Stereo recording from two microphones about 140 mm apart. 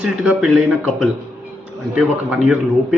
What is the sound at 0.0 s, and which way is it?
Speech, 5° right (ahead or behind).